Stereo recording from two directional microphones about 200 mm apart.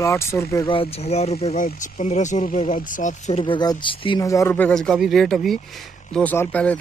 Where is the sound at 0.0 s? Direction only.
15° left (ahead or behind).